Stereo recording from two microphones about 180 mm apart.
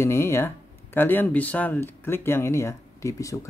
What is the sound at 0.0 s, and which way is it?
Speech, 15° left (ahead or behind).